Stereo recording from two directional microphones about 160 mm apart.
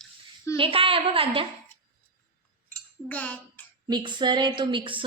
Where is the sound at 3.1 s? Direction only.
10° left (ahead or behind).